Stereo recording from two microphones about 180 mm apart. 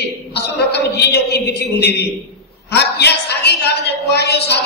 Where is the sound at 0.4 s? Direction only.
65° left (ahead or behind).